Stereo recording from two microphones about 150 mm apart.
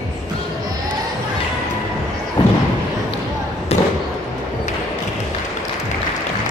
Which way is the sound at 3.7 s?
40° left (ahead or behind).